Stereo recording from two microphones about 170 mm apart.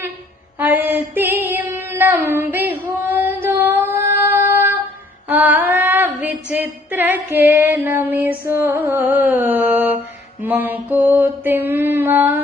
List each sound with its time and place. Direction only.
0.6 s female singing: 10° right (ahead or behind)
3.4 s child singing: 15° right (ahead or behind)
5.3 s female singing: 10° right (ahead or behind)
10.4 s mantra: 10° right (ahead or behind)